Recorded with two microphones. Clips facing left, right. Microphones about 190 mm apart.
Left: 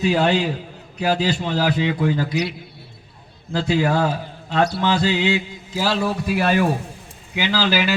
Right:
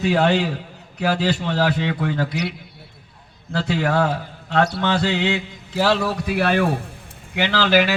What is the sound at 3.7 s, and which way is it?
A man's voice, 65° right (ahead or behind).